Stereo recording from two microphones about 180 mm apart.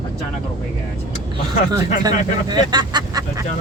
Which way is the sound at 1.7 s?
20° right (ahead or behind).